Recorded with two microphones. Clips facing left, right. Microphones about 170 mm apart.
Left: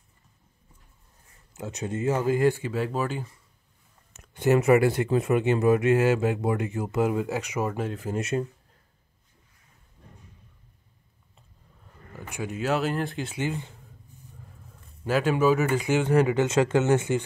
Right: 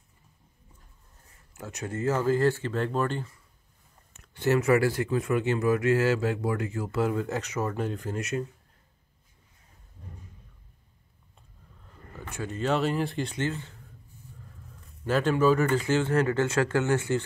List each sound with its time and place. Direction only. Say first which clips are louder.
1.5 s speech: left 4 dB; 20° left (ahead or behind)
4.2 s speech: left 3 dB; 20° left (ahead or behind)
8.1 s speech: left 3 dB; 30° left (ahead or behind)
12.3 s speech: left 1 dB; 10° left (ahead or behind)
15.0 s speech: left 1 dB; 10° left (ahead or behind)